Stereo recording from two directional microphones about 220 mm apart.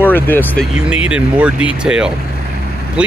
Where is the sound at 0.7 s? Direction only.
5° right (ahead or behind).